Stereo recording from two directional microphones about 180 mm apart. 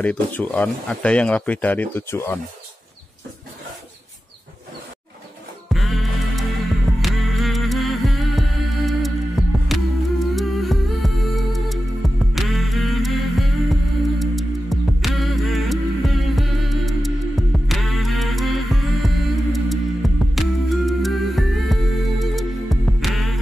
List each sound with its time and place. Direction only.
0.0 s speech: 10° left (ahead or behind)
5.7 s music: centre (ahead or behind)